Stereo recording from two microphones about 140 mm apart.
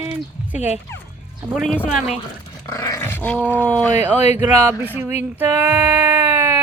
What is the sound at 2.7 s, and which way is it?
Speech, 20° left (ahead or behind).